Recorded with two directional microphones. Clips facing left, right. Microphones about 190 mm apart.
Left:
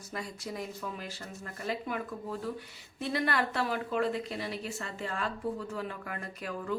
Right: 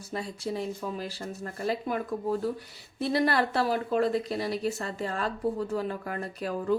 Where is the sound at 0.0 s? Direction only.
30° right (ahead or behind).